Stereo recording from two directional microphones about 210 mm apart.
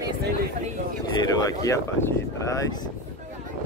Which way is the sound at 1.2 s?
15° left (ahead or behind).